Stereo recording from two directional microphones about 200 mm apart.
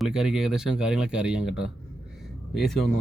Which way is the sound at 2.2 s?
Centre (ahead or behind).